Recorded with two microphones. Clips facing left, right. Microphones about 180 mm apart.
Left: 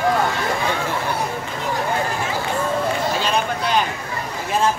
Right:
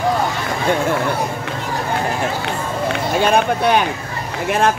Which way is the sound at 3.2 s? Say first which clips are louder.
Right 6 dB; 60° right (ahead or behind).